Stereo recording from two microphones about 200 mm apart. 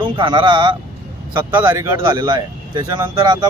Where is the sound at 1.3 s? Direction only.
10° right (ahead or behind).